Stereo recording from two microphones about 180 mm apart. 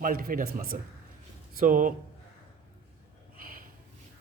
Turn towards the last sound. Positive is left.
turn(degrees=-50)  # may be behind; listen again after turning